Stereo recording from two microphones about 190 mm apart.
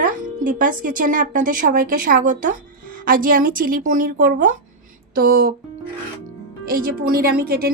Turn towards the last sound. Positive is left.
turn(degrees=-50)  # may be behind; listen again after turning